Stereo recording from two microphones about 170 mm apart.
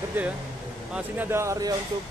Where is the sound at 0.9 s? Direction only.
10° right (ahead or behind).